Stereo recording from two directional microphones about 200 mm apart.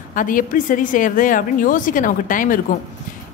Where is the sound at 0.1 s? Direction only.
40° left (ahead or behind).